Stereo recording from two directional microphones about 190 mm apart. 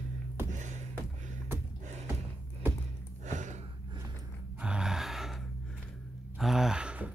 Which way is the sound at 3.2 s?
40° right (ahead or behind).